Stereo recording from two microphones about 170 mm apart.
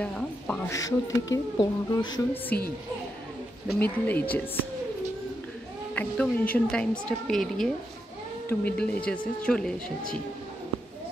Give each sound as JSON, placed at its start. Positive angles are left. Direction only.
{"t": 0.0, "sound": "speech", "side_deg": 5}
{"t": 0.7, "sound": "speech", "side_deg": 20}
{"t": 3.8, "sound": "speech", "side_deg": 10}
{"t": 5.9, "sound": "a woman's voice", "side_deg": 10}